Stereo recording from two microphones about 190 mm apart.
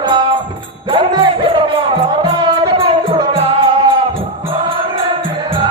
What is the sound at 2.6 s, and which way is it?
Music, 30° right (ahead or behind).